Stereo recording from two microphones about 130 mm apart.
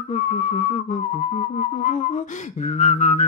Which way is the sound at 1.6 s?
75° left (ahead or behind).